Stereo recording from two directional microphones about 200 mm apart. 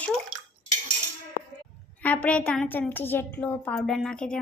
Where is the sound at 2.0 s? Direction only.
5° left (ahead or behind).